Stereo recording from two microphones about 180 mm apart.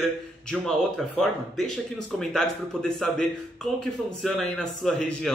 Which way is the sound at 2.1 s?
Centre (ahead or behind).